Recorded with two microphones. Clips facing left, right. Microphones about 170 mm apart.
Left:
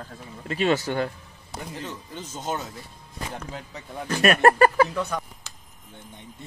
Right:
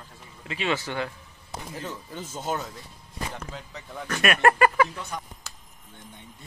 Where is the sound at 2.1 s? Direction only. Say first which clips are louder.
Even; 10° right (ahead or behind).